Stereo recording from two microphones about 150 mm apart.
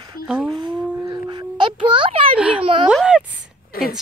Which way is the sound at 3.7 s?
80° left.